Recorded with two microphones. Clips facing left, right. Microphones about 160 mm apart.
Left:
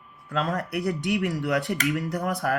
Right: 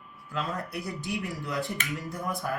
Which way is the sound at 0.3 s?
70° left (ahead or behind).